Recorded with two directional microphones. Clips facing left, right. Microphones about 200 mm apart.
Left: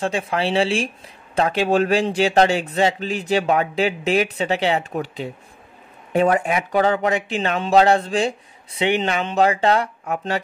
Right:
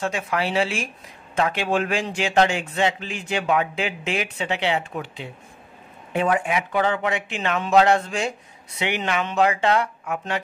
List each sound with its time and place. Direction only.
0.0 s speech: 30° left (ahead or behind)